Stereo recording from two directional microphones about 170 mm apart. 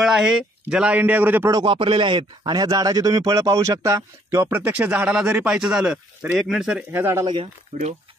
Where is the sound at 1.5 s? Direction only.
30° right (ahead or behind).